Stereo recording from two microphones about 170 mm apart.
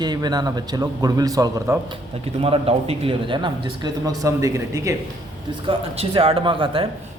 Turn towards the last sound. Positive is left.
turn(degrees=-30)  # may be behind; listen again after turning